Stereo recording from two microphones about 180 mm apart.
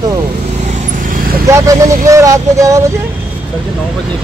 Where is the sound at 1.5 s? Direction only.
20° right (ahead or behind).